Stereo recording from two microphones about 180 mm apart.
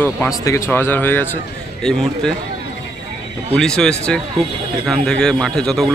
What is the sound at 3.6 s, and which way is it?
A man's voice, 5° left (ahead or behind).